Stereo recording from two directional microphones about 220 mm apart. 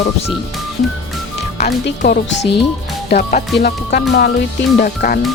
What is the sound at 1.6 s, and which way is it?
Speech, 35° left (ahead or behind).